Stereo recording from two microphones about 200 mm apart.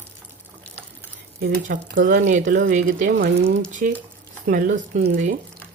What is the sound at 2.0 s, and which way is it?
Speech, 50° right (ahead or behind).